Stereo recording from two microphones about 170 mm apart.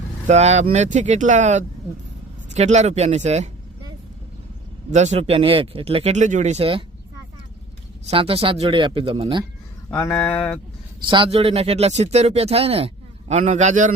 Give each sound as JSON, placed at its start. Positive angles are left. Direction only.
{"t": 0.3, "sound": "speech", "side_deg": -40}
{"t": 4.9, "sound": "speech", "side_deg": -40}
{"t": 8.0, "sound": "speech", "side_deg": -35}
{"t": 9.9, "sound": "speech", "side_deg": 10}
{"t": 11.0, "sound": "speech", "side_deg": -30}